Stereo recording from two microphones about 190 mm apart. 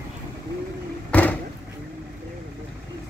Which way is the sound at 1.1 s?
10° left (ahead or behind).